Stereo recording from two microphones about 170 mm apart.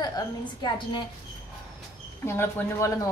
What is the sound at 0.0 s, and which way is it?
A woman's voice, 25° left (ahead or behind).